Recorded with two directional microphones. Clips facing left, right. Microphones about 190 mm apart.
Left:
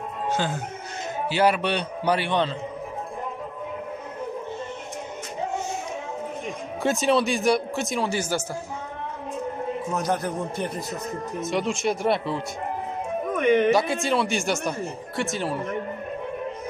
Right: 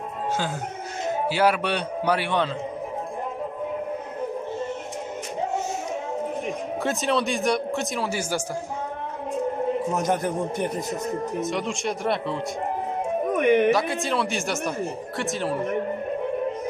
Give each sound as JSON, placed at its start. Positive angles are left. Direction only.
{"t": 1.3, "sound": "a man's voice", "side_deg": -5}
{"t": 6.8, "sound": "speech", "side_deg": 0}
{"t": 9.9, "sound": "a man's voice", "side_deg": -20}
{"t": 11.4, "sound": "speech", "side_deg": 0}
{"t": 13.3, "sound": "speech", "side_deg": -15}
{"t": 13.7, "sound": "speech", "side_deg": 0}